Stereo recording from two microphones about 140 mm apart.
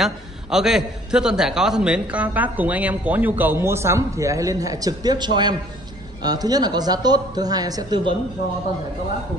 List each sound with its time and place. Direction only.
0.0 s a man's voice: 5° right (ahead or behind); by 8.1 s 30° right (ahead or behind)